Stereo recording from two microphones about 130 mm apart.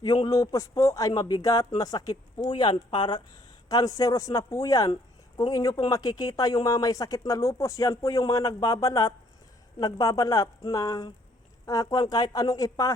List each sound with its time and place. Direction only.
0.0 s speech: 30° left (ahead or behind)